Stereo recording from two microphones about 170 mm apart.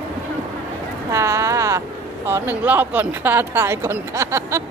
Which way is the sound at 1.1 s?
15° right (ahead or behind).